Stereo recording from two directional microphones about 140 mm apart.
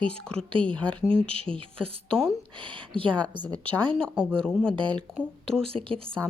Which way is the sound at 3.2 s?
10° left (ahead or behind).